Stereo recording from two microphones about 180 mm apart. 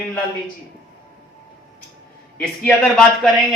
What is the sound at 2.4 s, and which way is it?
Speech, 5° left (ahead or behind).